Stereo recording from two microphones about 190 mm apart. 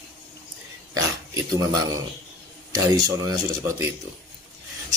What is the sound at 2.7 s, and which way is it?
Speech, 20° right (ahead or behind).